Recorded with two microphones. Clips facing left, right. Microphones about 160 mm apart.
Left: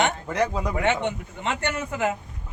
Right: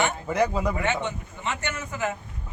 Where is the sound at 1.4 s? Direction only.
60° left (ahead or behind).